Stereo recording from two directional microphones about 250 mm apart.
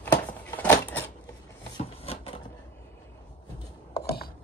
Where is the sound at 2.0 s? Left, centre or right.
Left.